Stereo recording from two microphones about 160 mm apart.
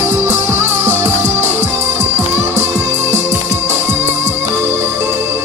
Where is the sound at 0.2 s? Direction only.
15° right (ahead or behind).